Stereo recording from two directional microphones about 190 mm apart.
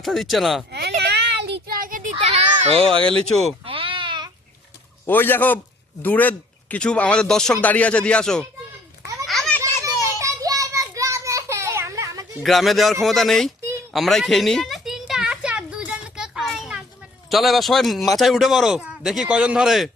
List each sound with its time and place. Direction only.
0.0 s a man's voice: centre (ahead or behind)
0.7 s child singing: 60° right (ahead or behind)
2.1 s a child's voice: 35° right (ahead or behind)
3.7 s baby cry: 25° right (ahead or behind)
5.0 s speech: 10° left (ahead or behind)
9.2 s children playing: centre (ahead or behind)
10.2 s child singing: 15° right (ahead or behind)
12.4 s a man's voice: centre (ahead or behind)
13.9 s a sound: centre (ahead or behind)
17.2 s a man's voice: centre (ahead or behind)